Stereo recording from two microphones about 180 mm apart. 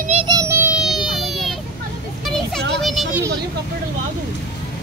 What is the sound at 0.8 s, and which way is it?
Baby cry, centre (ahead or behind).